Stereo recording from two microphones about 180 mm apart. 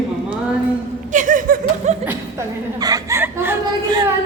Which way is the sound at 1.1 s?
45° right (ahead or behind).